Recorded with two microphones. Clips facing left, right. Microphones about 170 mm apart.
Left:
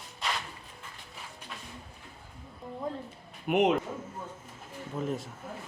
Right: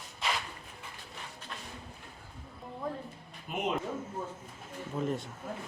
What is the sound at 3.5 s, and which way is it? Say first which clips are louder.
Speech: left 10 dB; 70° left (ahead or behind).